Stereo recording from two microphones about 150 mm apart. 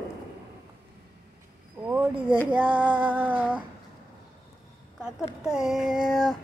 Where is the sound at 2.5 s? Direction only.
30° right (ahead or behind).